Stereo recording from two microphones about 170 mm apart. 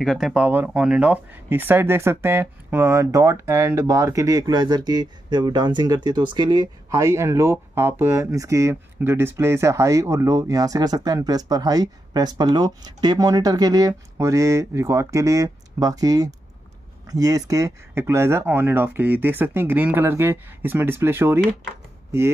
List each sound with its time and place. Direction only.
0.0 s speech: centre (ahead or behind)